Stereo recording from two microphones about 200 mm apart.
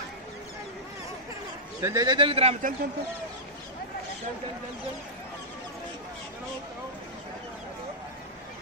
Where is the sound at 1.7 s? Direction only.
15° right (ahead or behind); by 2.7 s 30° right (ahead or behind).